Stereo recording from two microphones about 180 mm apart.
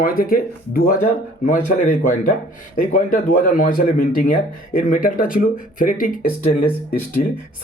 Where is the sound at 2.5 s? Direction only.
45° left (ahead or behind).